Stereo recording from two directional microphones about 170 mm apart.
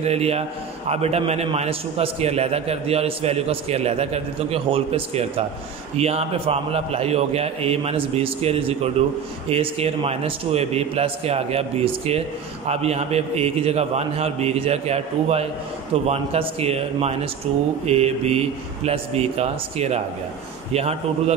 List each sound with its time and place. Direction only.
0.0 s a man's voice: 40° right (ahead or behind)